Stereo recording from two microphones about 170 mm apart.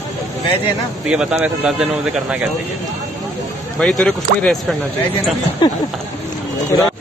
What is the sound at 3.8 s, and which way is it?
Speech, 5° left (ahead or behind).